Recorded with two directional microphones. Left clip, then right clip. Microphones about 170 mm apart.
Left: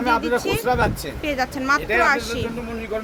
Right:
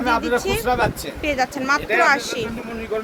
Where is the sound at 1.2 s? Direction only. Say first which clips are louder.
Right 2 dB; 5° right (ahead or behind).